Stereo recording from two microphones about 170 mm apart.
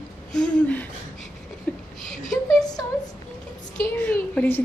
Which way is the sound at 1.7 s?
10° left (ahead or behind).